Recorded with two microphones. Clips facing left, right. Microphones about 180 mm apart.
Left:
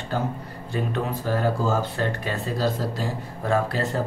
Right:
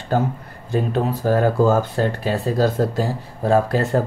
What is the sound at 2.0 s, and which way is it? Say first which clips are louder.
Speech: right 6 dB; 35° right (ahead or behind).